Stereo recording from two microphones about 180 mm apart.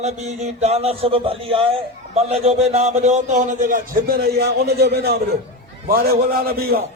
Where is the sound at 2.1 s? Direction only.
35° right (ahead or behind); by 6.8 s 55° right (ahead or behind).